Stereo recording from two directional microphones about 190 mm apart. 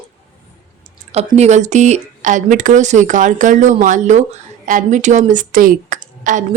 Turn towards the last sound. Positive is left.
turn(degrees=-40)  # may be behind; listen again after turning